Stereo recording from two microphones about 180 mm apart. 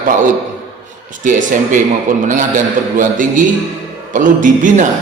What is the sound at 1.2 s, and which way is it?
Speech, 45° right (ahead or behind).